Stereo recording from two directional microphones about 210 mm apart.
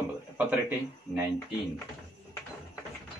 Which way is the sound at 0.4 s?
10° right (ahead or behind).